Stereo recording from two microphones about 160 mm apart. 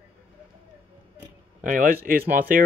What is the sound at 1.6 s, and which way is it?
Speech, 60° right (ahead or behind).